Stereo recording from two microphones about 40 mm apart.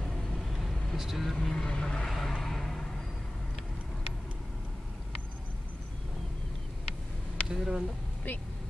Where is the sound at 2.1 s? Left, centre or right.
Centre.